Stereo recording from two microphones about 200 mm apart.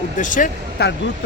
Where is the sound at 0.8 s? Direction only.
55° left (ahead or behind).